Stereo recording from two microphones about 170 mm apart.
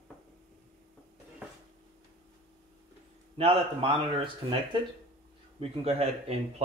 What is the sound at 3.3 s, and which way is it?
Speech, 30° right (ahead or behind).